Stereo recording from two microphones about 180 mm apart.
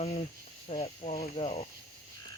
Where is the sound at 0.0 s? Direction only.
35° left (ahead or behind).